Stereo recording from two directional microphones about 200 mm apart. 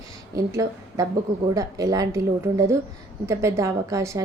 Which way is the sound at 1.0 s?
15° right (ahead or behind).